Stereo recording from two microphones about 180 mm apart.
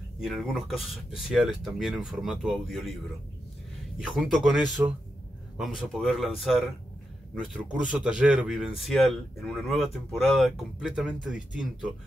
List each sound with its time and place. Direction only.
0.2 s speech: centre (ahead or behind)
4.0 s speech: centre (ahead or behind)
4.8 s speech: 15° right (ahead or behind)
5.8 s speech: centre (ahead or behind)